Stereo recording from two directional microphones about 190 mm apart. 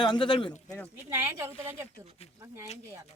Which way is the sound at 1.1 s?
15° right (ahead or behind).